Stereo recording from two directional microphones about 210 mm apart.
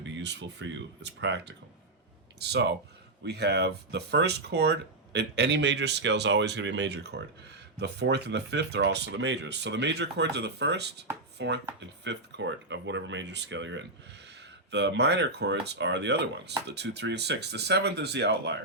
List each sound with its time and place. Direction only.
0.0 s speech: 55° right (ahead or behind)
11.3 s chopping: 55° right (ahead or behind)
11.8 s speech: 60° right (ahead or behind)